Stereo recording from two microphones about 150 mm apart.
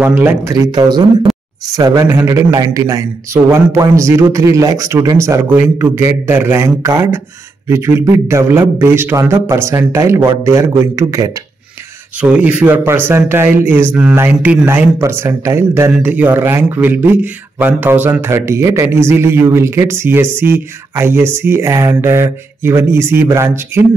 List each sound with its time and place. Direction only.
0.0 s speech: 15° right (ahead or behind)
1.3 s a sound: centre (ahead or behind)
1.7 s speech: 25° right (ahead or behind)
12.2 s speech: 10° right (ahead or behind)